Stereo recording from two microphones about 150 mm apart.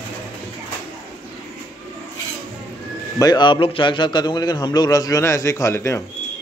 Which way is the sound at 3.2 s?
30° left (ahead or behind).